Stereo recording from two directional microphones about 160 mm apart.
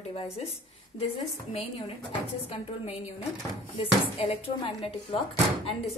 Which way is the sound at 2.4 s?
35° left (ahead or behind).